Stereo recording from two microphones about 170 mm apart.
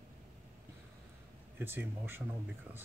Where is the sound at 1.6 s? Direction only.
15° right (ahead or behind).